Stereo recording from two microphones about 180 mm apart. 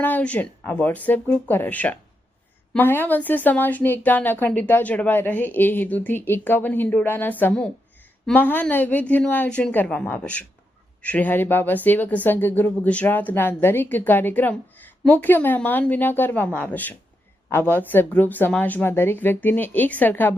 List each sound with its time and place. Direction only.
0.0 s speech: 10° left (ahead or behind)